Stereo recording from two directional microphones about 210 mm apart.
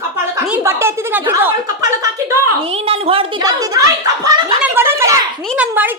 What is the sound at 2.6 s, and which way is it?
A woman's voice, 25° right (ahead or behind).